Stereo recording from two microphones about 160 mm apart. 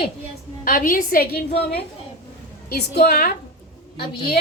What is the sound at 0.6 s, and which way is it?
Speech, 60° left (ahead or behind).